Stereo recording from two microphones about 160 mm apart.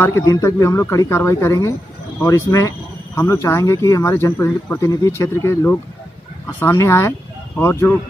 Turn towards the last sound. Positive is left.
turn(degrees=15)  # may be behind; listen again after turning